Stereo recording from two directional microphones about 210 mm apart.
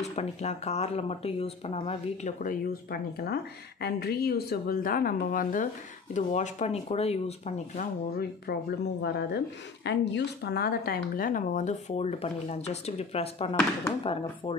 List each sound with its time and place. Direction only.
0.0 s speech: 30° left (ahead or behind)